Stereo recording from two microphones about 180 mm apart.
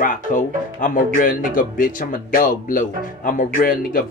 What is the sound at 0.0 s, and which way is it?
Speech, 50° left (ahead or behind).